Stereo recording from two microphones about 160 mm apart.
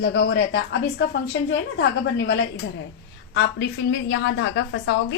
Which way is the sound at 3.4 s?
90° left.